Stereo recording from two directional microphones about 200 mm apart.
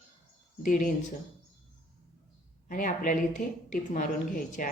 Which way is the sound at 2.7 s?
45° left (ahead or behind).